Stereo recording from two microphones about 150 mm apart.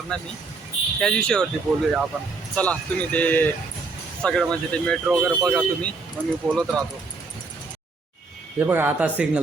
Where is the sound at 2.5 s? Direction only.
10° left (ahead or behind).